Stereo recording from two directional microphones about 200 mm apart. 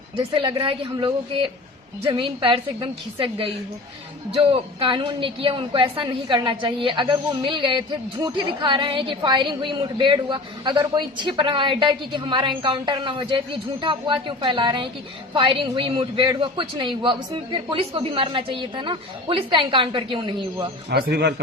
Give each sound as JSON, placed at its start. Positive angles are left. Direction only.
{"t": 0.2, "sound": "a woman's voice", "side_deg": -25}
{"t": 20.9, "sound": "a man's voice", "side_deg": -55}